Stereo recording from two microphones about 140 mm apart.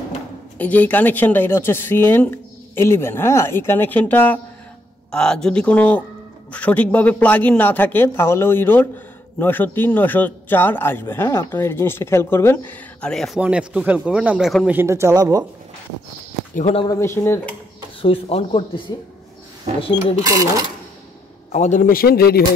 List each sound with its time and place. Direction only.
0.6 s a man's voice: 10° left (ahead or behind)
13.4 s speech: 10° right (ahead or behind)
14.7 s speech: 15° right (ahead or behind)
16.8 s speech: 25° left (ahead or behind)
18.0 s speech: 40° left (ahead or behind)
20.3 s speech: 30° right (ahead or behind)
21.5 s a man's voice: 55° left (ahead or behind); by 22.4 s 90° left